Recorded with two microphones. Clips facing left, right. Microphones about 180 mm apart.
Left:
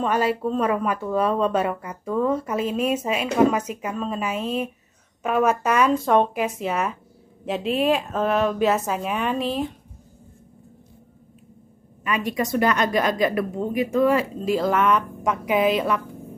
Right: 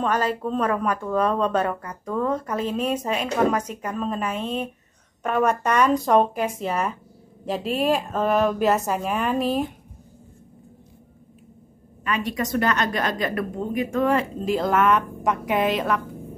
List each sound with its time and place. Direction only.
0.0 s a woman's voice: 10° left (ahead or behind)
12.0 s speech: 10° left (ahead or behind)